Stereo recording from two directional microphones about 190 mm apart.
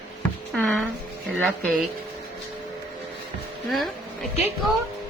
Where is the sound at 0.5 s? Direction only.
5° left (ahead or behind).